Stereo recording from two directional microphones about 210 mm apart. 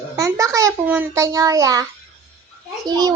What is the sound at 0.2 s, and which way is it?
A child's voice, 15° right (ahead or behind).